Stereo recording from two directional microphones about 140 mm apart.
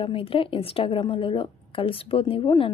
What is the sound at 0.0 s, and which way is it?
A woman's voice, 40° left (ahead or behind).